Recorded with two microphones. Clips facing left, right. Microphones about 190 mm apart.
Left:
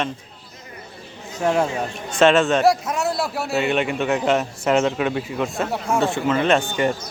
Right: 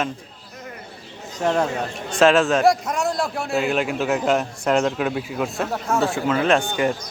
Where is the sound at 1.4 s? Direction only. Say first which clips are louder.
Left 1 dB; 10° left (ahead or behind).